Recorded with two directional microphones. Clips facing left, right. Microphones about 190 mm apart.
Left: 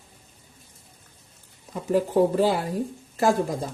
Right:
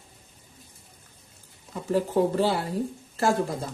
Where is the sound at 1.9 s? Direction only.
10° left (ahead or behind).